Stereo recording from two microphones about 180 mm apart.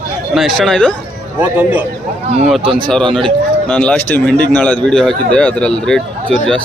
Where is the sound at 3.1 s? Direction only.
5° left (ahead or behind).